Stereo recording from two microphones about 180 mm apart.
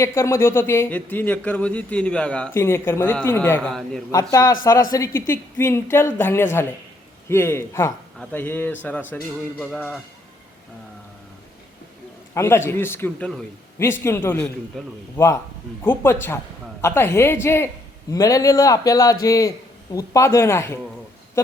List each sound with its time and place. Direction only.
0.0 s a man's voice: 15° left (ahead or behind)
4.1 s speech: 20° left (ahead or behind)
12.3 s speech: 15° left (ahead or behind)